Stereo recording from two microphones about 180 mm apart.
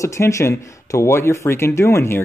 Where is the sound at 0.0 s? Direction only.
15° left (ahead or behind).